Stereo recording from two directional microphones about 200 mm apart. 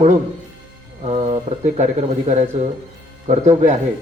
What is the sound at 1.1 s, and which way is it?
Speech, 30° right (ahead or behind).